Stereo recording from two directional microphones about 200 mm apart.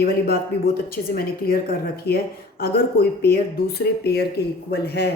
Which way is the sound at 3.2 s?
50° left (ahead or behind).